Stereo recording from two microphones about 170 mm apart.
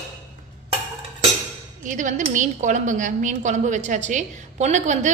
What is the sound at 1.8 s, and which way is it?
A woman's voice, 45° right (ahead or behind).